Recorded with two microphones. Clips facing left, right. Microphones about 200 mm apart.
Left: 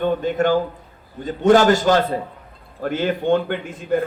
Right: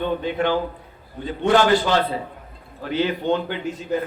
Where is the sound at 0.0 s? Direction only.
45° left (ahead or behind).